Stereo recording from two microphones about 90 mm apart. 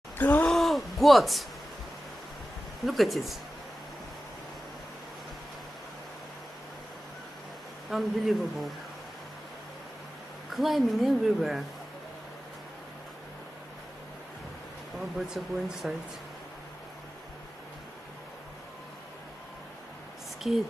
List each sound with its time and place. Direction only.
0.2 s groan: 20° left (ahead or behind)
0.5 s a sound: centre (ahead or behind)
2.8 s a woman's voice: centre (ahead or behind)
7.9 s a woman's voice: centre (ahead or behind)
10.5 s a woman's voice: centre (ahead or behind)
15.0 s a woman's voice: 5° right (ahead or behind)
20.4 s a woman's voice: 5° right (ahead or behind)